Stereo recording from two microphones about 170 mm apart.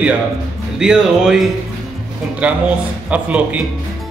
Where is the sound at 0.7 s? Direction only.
5° right (ahead or behind).